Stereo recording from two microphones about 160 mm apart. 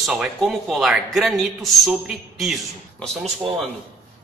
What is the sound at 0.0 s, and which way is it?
A man's voice, centre (ahead or behind).